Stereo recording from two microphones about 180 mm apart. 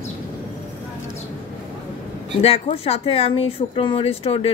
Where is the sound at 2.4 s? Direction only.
35° left (ahead or behind).